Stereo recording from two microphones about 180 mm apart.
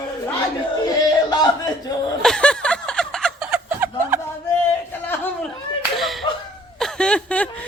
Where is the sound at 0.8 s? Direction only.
20° left (ahead or behind).